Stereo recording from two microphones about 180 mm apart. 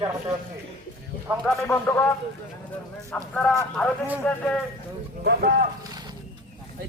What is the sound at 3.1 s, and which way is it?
Speech, 5° left (ahead or behind).